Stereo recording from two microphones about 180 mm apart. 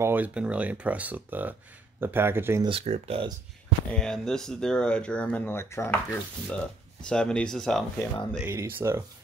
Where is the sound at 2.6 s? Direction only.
35° right (ahead or behind).